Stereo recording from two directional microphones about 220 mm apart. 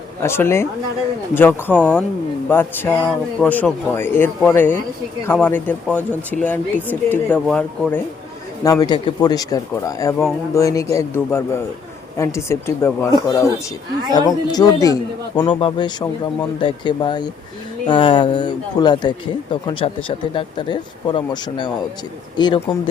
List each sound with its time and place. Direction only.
0.2 s speech: 10° left (ahead or behind)
8.6 s speech: 15° left (ahead or behind)